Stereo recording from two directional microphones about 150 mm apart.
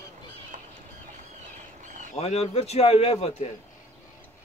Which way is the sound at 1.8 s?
55° right (ahead or behind).